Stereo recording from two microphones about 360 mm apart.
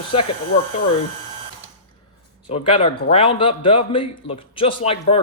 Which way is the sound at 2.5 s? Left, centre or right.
Centre.